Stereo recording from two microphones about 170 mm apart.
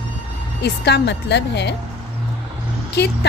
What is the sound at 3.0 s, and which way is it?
Speech, 80° left.